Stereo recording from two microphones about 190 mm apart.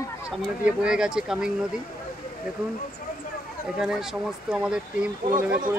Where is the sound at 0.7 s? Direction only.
5° right (ahead or behind).